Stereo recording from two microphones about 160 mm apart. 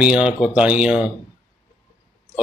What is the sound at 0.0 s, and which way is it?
Speech, 5° right (ahead or behind).